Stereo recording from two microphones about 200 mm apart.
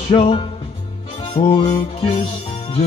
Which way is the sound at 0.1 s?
30° left (ahead or behind).